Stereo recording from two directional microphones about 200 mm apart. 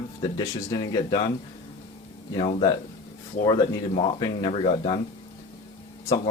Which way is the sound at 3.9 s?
25° left (ahead or behind).